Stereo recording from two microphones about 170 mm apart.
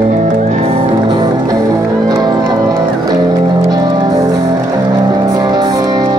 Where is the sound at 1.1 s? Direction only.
25° right (ahead or behind).